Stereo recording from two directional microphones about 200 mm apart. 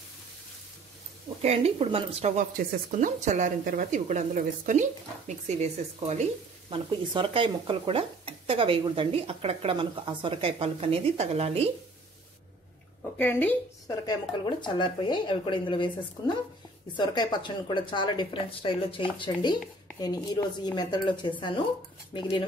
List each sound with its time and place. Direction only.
1.4 s a woman's voice: 30° right (ahead or behind)
2.5 s a woman's voice: 40° right (ahead or behind)
13.2 s speech: 10° left (ahead or behind)
16.9 s speech: 20° left (ahead or behind)